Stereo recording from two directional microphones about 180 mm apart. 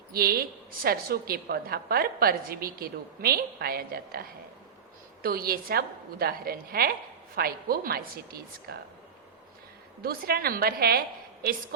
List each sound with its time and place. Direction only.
0.1 s a woman's voice: 55° right (ahead or behind)
10.0 s a woman's voice: 55° right (ahead or behind)